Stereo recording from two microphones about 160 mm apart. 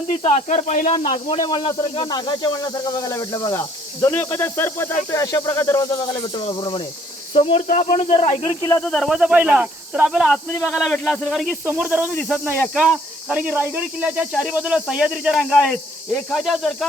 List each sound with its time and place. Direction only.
0.1 s speech: 45° left (ahead or behind)
0.9 s speech: 30° left (ahead or behind)
7.7 s speech: 50° left (ahead or behind)
8.1 s speech: 35° left (ahead or behind)
8.8 s speech: centre (ahead or behind)